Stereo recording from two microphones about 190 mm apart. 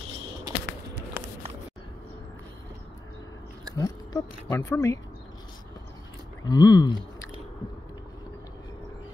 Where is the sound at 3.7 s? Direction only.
15° left (ahead or behind).